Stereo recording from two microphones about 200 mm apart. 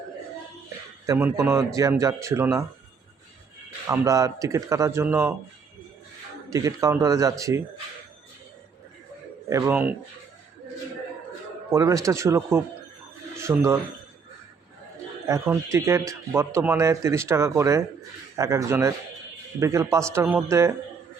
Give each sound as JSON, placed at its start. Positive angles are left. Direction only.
{"t": 1.0, "sound": "speech", "side_deg": -15}
{"t": 3.8, "sound": "speech", "side_deg": -15}
{"t": 6.5, "sound": "speech", "side_deg": -15}
{"t": 9.5, "sound": "speech", "side_deg": -10}
{"t": 11.7, "sound": "speech", "side_deg": -15}
{"t": 15.3, "sound": "speech", "side_deg": -15}